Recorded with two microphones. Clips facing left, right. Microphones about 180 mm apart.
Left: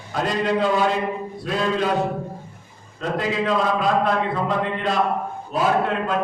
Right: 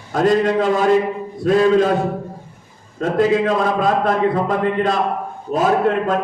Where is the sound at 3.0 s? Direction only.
45° right (ahead or behind).